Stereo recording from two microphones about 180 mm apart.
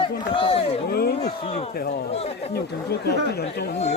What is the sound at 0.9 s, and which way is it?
Speech, 60° left (ahead or behind).